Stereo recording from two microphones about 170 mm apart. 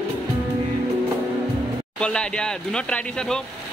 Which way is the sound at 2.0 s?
5° left (ahead or behind).